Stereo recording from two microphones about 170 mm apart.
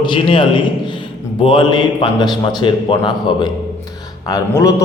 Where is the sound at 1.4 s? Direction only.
30° left (ahead or behind).